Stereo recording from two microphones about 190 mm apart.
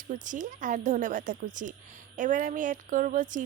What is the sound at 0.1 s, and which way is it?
A woman's voice, 40° right (ahead or behind).